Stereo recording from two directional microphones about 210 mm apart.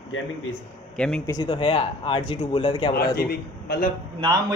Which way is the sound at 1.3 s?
20° left (ahead or behind).